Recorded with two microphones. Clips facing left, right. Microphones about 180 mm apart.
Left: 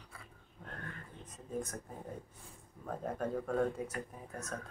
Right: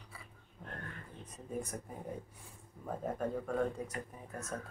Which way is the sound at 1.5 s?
10° right (ahead or behind).